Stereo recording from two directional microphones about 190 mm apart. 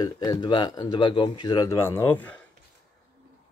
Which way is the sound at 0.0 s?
20° left (ahead or behind).